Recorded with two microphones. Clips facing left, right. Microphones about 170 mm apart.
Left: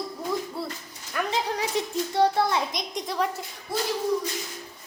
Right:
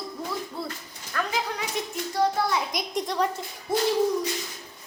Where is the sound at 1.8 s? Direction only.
25° left (ahead or behind).